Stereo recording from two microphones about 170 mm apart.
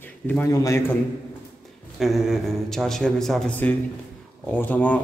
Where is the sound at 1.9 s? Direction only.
Centre (ahead or behind).